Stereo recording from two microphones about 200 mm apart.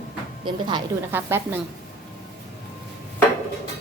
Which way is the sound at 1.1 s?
10° right (ahead or behind).